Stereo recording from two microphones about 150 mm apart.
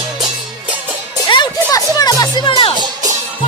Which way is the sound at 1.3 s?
30° left (ahead or behind).